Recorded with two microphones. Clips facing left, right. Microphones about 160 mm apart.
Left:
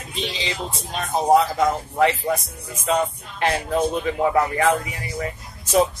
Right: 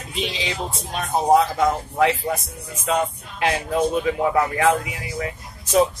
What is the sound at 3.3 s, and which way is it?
A man's voice, 5° right (ahead or behind).